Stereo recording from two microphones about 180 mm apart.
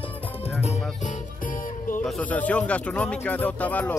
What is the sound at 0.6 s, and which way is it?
Music, 40° left (ahead or behind).